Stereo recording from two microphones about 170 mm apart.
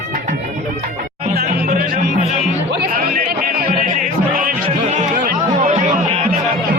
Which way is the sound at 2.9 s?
60° right (ahead or behind).